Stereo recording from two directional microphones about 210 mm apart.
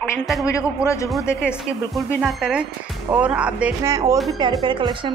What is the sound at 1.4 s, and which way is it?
A man's voice, 5° right (ahead or behind).